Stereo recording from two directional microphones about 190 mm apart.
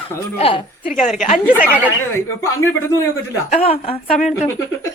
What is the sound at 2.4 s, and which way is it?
Speech, 15° left (ahead or behind).